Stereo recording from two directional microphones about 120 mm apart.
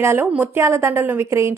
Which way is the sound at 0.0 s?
20° right (ahead or behind).